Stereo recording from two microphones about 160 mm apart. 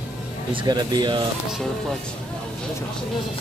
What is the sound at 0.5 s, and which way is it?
Speech, 25° right (ahead or behind).